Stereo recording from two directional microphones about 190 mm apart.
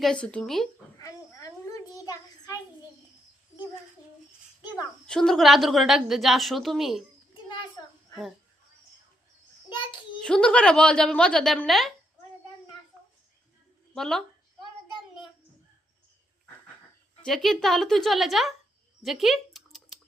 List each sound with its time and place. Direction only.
0.0 s a woman's voice: 5° left (ahead or behind)
0.9 s a sound: 20° left (ahead or behind)
5.0 s a woman's voice: 5° left (ahead or behind)
9.6 s child singing: 25° left (ahead or behind)
10.2 s a woman's voice: 5° left (ahead or behind)
13.9 s a woman's voice: centre (ahead or behind)
17.2 s a woman's voice: centre (ahead or behind)
19.0 s a sound: centre (ahead or behind)